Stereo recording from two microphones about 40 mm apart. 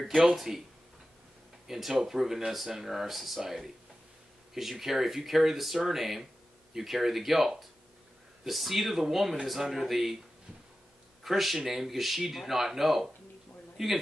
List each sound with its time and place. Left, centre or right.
0.5 s speech: centre
1.7 s speech: centre
11.2 s speech: centre